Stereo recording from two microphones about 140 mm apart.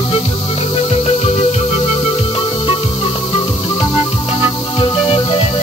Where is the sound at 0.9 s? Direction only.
45° left (ahead or behind).